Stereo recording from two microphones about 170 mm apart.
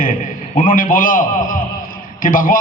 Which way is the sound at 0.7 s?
55° left (ahead or behind).